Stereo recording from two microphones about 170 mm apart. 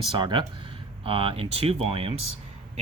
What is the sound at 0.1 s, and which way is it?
Speech, 25° right (ahead or behind).